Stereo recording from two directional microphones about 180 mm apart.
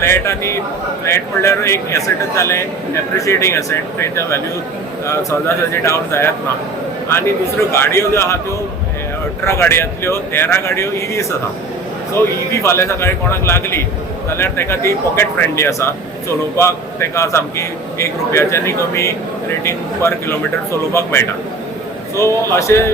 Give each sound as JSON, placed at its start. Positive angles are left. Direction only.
{"t": 0.0, "sound": "a man's voice", "side_deg": 15}
{"t": 7.7, "sound": "a man's voice", "side_deg": 15}
{"t": 9.4, "sound": "a man's voice", "side_deg": 15}